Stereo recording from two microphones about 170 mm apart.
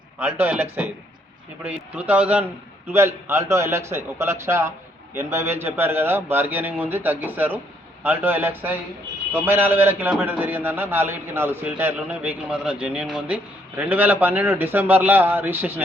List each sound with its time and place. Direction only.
0.2 s a man's voice: 10° right (ahead or behind)